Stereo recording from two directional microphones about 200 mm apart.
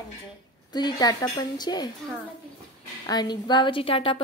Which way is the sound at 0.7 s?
20° left (ahead or behind).